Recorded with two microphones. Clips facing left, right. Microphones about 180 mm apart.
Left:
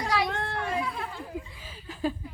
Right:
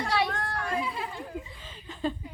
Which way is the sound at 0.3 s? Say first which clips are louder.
Left 2 dB; 25° left (ahead or behind).